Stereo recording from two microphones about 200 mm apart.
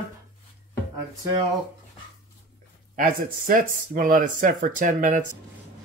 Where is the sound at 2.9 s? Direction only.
45° right (ahead or behind).